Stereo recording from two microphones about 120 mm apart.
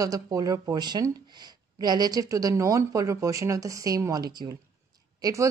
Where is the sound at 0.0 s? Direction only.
30° right (ahead or behind).